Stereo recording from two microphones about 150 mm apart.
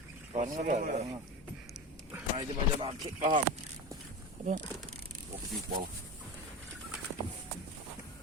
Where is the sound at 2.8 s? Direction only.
35° right (ahead or behind).